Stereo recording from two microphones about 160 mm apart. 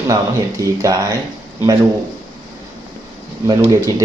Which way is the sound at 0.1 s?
20° right (ahead or behind).